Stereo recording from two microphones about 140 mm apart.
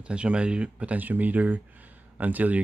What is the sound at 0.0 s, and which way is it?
Speech, 5° right (ahead or behind).